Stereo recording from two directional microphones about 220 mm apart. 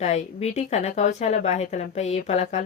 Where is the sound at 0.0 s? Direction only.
30° left (ahead or behind).